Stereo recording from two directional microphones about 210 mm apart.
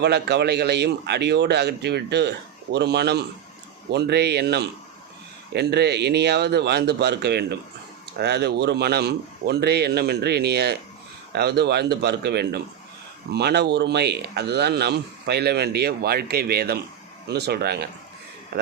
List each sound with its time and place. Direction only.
0.0 s speech: 50° right (ahead or behind)